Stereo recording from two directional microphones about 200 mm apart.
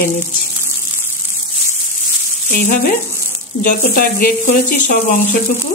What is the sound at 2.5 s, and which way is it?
Speech, 40° left (ahead or behind).